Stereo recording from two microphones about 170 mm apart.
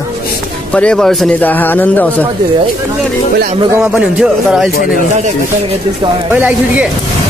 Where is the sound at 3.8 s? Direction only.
5° right (ahead or behind).